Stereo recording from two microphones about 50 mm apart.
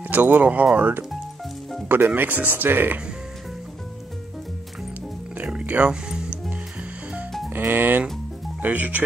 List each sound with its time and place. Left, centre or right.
0.1 s speech: right
5.4 s music: right
7.5 s speech: right